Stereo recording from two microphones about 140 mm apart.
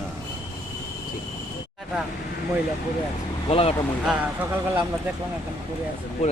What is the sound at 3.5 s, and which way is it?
Speech, 45° left (ahead or behind).